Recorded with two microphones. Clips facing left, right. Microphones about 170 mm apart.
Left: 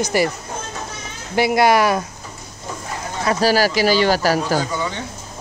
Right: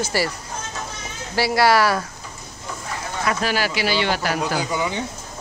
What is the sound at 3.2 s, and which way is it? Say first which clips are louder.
Speech: left 6 dB; 35° left (ahead or behind).